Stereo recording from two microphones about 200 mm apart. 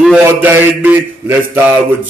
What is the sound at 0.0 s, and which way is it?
Speech, centre (ahead or behind).